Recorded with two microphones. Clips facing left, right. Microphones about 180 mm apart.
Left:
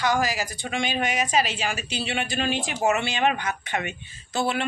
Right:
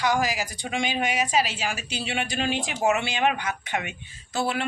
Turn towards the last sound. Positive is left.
turn(degrees=-5)  # may be behind; listen again after turning